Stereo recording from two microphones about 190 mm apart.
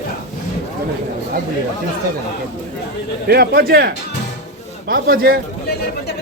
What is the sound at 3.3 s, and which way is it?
Speech, 55° right (ahead or behind).